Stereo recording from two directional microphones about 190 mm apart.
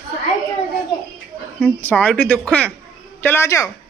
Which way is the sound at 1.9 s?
10° left (ahead or behind).